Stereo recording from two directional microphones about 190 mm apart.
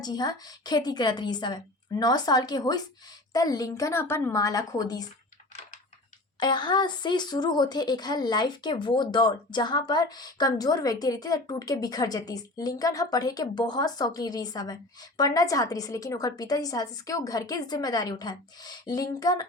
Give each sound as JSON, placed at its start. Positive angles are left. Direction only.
{"t": 0.0, "sound": "speech", "side_deg": 20}
{"t": 6.4, "sound": "speech", "side_deg": 25}